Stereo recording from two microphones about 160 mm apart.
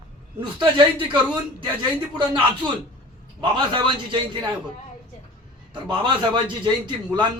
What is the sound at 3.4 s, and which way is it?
A man's voice, 30° right (ahead or behind).